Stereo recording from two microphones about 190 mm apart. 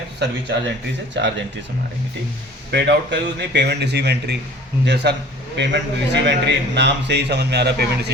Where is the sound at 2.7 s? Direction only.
60° right (ahead or behind).